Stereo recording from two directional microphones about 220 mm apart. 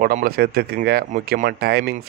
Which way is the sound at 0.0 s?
40° right (ahead or behind).